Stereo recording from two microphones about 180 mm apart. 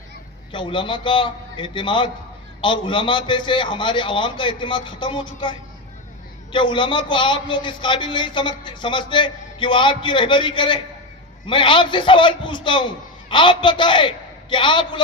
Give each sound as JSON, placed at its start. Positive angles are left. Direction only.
{"t": 0.5, "sound": "a man's voice", "side_deg": 25}